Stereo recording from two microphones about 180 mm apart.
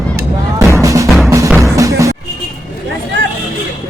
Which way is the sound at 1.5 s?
15° right (ahead or behind).